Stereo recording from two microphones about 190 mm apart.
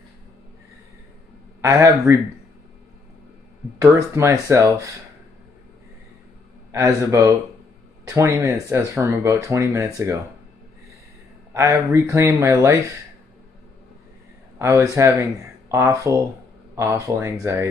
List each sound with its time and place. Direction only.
1.6 s speech: 15° right (ahead or behind)
3.8 s speech: 15° right (ahead or behind)
6.7 s speech: 15° right (ahead or behind)
11.5 s speech: 15° right (ahead or behind)
14.6 s speech: 15° right (ahead or behind)